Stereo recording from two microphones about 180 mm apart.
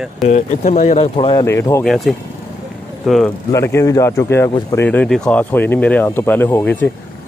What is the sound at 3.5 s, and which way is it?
Speech, 15° left (ahead or behind).